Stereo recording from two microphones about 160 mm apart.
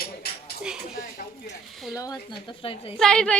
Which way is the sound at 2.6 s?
35° left (ahead or behind).